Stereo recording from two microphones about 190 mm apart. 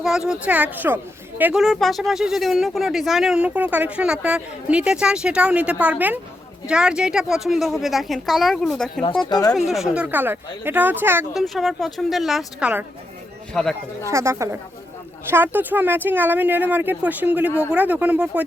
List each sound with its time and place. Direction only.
0.0 s speech: centre (ahead or behind)
9.3 s speech: 20° left (ahead or behind)
9.6 s speech: centre (ahead or behind)
11.4 s speech: centre (ahead or behind)
14.1 s speech: 15° right (ahead or behind)